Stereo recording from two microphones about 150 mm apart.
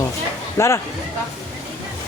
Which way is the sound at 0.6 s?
15° left (ahead or behind).